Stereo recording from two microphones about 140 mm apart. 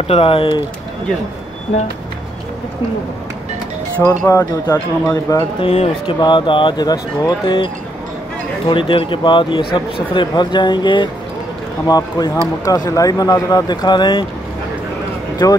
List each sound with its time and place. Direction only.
0.1 s speech: 40° left (ahead or behind)
4.3 s speech: 20° left (ahead or behind)
5.6 s speech: 50° left (ahead or behind)
6.0 s speech: 35° left (ahead or behind)